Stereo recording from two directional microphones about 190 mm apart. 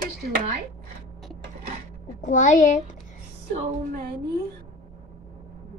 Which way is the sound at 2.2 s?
40° left (ahead or behind).